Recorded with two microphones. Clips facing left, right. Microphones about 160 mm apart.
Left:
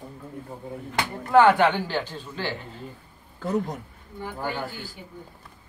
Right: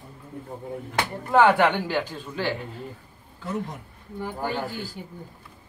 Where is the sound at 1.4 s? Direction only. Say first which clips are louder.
Right 3 dB; 10° right (ahead or behind).